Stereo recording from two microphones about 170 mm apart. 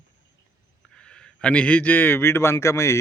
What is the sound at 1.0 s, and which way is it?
Speech, 5° left (ahead or behind).